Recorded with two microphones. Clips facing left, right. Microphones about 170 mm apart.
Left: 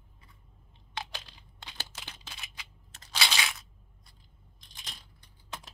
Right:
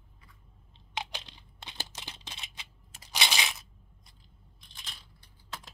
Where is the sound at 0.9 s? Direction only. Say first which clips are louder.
Right 2 dB; 20° right (ahead or behind).